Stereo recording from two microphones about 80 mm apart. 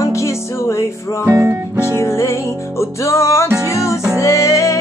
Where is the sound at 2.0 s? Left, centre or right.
Left.